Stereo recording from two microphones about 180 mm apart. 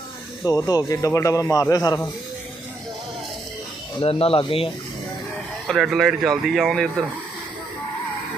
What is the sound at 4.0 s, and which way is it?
Speech, 30° left (ahead or behind).